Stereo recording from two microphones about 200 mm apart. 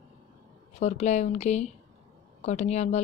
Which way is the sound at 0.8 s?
35° left (ahead or behind).